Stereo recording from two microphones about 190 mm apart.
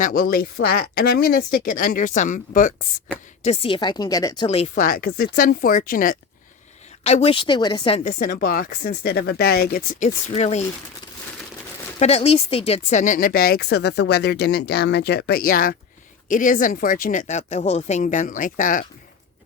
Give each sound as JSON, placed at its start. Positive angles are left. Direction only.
{"t": 0.0, "sound": "speech", "side_deg": 50}
{"t": 3.4, "sound": "speech", "side_deg": 30}
{"t": 4.4, "sound": "speech", "side_deg": 35}
{"t": 4.7, "sound": "speech", "side_deg": 50}
{"t": 7.0, "sound": "speech", "side_deg": 35}
{"t": 7.9, "sound": "speech", "side_deg": 45}
{"t": 10.3, "sound": "speech", "side_deg": 35}
{"t": 11.9, "sound": "speech", "side_deg": 35}